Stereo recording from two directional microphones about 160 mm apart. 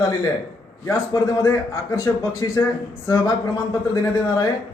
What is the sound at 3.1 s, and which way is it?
Speech, 20° left (ahead or behind).